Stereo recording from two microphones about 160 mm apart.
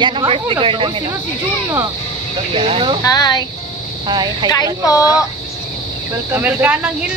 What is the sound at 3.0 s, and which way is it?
Speech, 25° left (ahead or behind).